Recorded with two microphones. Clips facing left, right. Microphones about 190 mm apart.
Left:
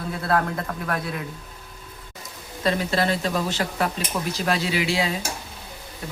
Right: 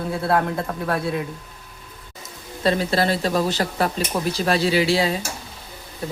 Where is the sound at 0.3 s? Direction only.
25° right (ahead or behind).